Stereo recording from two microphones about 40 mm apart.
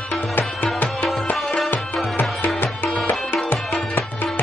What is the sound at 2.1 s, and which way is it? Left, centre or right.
Music, left.